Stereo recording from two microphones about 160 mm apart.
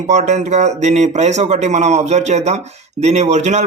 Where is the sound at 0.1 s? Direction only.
45° right (ahead or behind).